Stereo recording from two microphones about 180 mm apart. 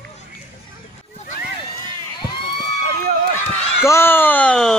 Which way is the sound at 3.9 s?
10° left (ahead or behind).